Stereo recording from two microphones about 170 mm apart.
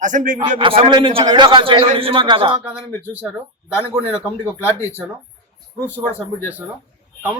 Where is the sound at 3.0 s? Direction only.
10° right (ahead or behind).